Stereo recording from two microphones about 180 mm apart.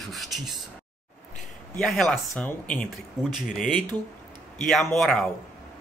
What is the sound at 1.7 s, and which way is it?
Speech, 5° left (ahead or behind).